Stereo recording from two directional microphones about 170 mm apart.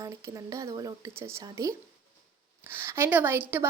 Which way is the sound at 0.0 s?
20° right (ahead or behind).